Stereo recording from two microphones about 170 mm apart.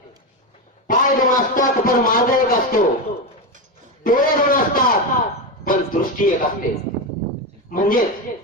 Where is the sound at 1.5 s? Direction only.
55° left (ahead or behind).